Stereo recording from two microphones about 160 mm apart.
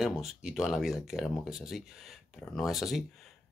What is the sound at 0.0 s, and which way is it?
Speech, centre (ahead or behind).